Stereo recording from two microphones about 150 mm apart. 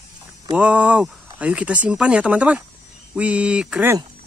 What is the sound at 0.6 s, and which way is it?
Speech, 10° right (ahead or behind).